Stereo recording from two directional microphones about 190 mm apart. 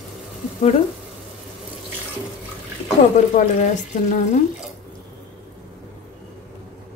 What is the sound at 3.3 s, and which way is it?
Speech, 40° left (ahead or behind).